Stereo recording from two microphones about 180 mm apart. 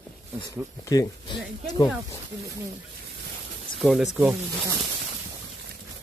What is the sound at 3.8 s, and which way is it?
Speech, centre (ahead or behind).